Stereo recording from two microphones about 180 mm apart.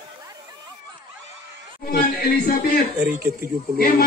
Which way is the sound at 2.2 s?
55° left (ahead or behind).